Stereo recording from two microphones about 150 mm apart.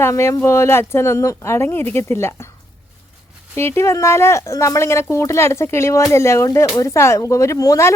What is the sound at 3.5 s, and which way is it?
Speech, 15° left (ahead or behind).